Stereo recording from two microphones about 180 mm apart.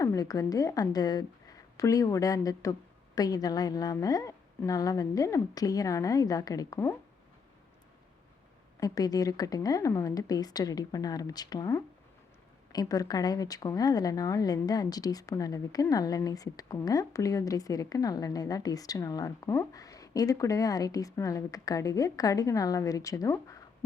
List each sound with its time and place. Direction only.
0.0 s speech: 20° left (ahead or behind)
8.8 s speech: 20° left (ahead or behind)